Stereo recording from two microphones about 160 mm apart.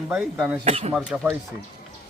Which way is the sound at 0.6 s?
40° right (ahead or behind).